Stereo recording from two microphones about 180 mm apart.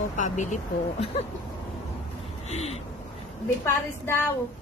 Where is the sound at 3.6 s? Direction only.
15° left (ahead or behind).